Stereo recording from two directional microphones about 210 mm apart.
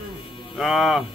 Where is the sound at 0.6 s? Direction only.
Centre (ahead or behind).